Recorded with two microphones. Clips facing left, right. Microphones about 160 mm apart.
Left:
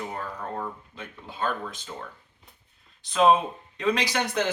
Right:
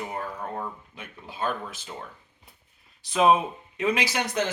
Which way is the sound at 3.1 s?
10° right (ahead or behind).